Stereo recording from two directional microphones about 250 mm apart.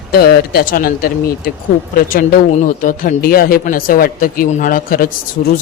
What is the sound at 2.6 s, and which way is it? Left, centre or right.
Speech, left.